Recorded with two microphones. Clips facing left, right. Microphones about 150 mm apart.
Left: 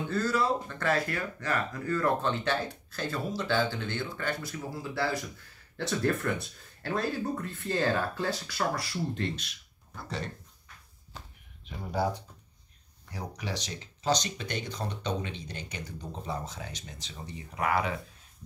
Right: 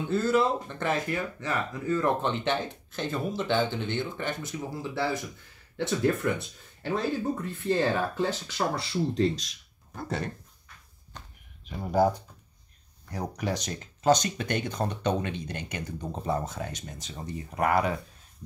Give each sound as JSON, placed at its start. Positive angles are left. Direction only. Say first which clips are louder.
{"t": 0.1, "sound": "speech", "louder": "right 4 dB", "side_deg": -20}
{"t": 9.9, "sound": "speech", "louder": "right 5 dB", "side_deg": -50}
{"t": 11.1, "sound": "a sound", "louder": "even", "side_deg": 5}
{"t": 11.9, "sound": "speech", "louder": "right 7 dB", "side_deg": -45}